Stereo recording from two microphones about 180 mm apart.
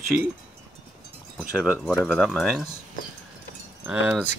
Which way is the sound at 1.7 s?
5° left (ahead or behind).